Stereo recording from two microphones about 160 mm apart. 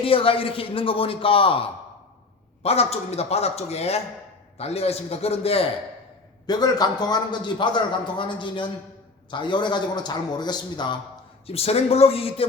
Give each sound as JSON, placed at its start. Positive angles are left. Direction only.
{"t": 0.0, "sound": "a man's voice", "side_deg": 35}
{"t": 6.4, "sound": "a man's voice", "side_deg": 25}
{"t": 11.4, "sound": "a man's voice", "side_deg": 40}